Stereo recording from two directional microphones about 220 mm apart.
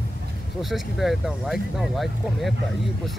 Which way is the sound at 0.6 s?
Centre (ahead or behind).